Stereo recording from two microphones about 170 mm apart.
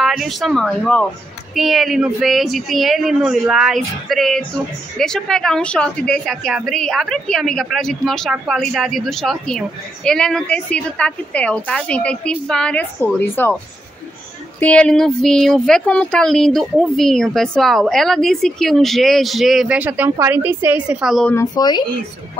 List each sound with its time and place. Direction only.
0.0 s a woman's voice: centre (ahead or behind)
14.6 s a woman's voice: 5° left (ahead or behind)
21.5 s speech: 25° left (ahead or behind)